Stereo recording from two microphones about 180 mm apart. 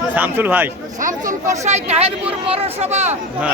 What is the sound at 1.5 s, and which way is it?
Speech, 40° right (ahead or behind).